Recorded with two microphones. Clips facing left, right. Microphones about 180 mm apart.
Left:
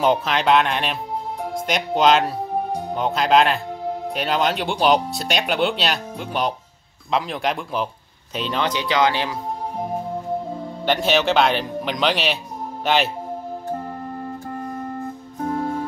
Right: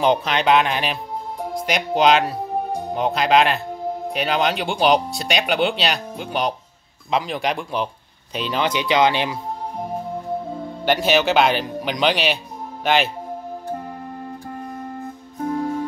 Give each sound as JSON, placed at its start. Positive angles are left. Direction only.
{"t": 0.0, "sound": "speech", "side_deg": 0}
{"t": 8.7, "sound": "speech", "side_deg": -20}
{"t": 10.9, "sound": "speech", "side_deg": 0}
{"t": 15.4, "sound": "music", "side_deg": 40}